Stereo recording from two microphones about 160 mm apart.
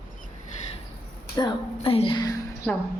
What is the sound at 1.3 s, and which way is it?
Speech, 30° left (ahead or behind).